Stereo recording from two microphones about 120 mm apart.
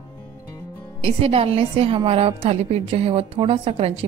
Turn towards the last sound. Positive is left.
turn(degrees=-50)  # may be behind; listen again after turning